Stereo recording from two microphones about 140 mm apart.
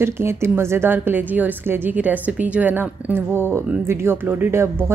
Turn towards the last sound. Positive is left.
turn(degrees=-20)  # may be behind; listen again after turning